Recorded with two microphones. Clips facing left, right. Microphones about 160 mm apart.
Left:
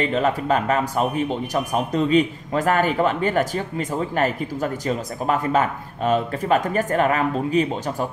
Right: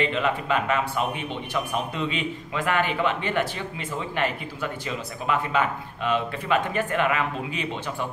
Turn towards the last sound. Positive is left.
turn(degrees=40)  # may be behind; listen again after turning